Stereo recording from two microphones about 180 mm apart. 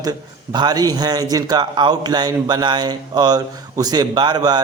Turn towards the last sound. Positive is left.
turn(degrees=-25)  # may be behind; listen again after turning